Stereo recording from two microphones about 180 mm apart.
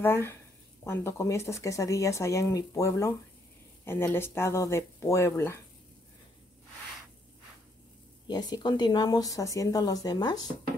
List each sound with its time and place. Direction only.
0.0 s speech: 15° left (ahead or behind)
8.3 s a woman's voice: 20° left (ahead or behind)